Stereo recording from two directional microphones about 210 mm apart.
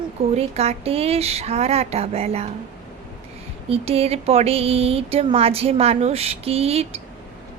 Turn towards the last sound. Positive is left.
turn(degrees=-30)  # may be behind; listen again after turning